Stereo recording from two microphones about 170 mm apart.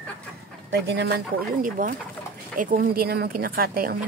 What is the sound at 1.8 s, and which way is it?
Speech, 50° right (ahead or behind).